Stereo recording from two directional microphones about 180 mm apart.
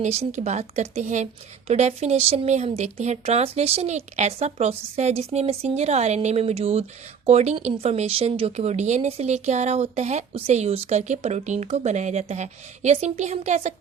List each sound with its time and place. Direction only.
0.0 s a woman's voice: 40° right (ahead or behind)